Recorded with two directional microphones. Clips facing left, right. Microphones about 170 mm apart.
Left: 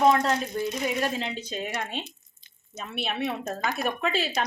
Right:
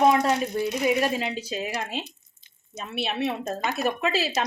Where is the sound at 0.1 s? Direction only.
10° right (ahead or behind).